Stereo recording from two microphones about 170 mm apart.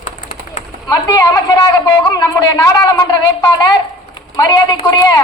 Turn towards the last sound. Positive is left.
turn(degrees=25)  # may be behind; listen again after turning